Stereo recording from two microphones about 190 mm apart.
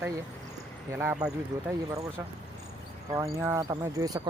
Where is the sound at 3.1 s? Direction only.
15° right (ahead or behind).